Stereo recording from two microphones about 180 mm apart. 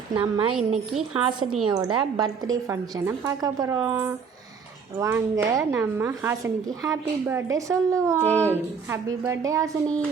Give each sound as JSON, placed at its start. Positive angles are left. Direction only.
{"t": 0.2, "sound": "a woman's voice", "side_deg": -30}
{"t": 1.5, "sound": "a woman's voice", "side_deg": -5}
{"t": 1.7, "sound": "a woman's voice", "side_deg": -20}
{"t": 8.3, "sound": "speech", "side_deg": 10}
{"t": 8.9, "sound": "a woman's voice", "side_deg": -15}